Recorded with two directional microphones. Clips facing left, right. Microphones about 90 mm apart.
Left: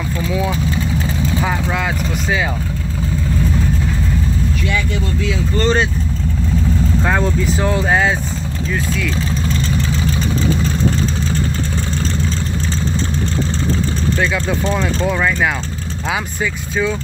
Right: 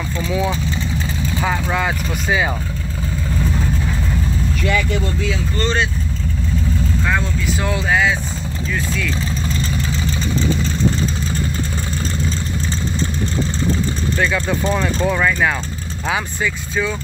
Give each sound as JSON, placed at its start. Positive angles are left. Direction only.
{"t": 0.3, "sound": "speech", "side_deg": 5}
{"t": 5.6, "sound": "speech", "side_deg": 30}
{"t": 7.1, "sound": "speech", "side_deg": 30}
{"t": 8.7, "sound": "speech", "side_deg": 5}
{"t": 14.4, "sound": "speech", "side_deg": -5}
{"t": 15.0, "sound": "speech", "side_deg": 5}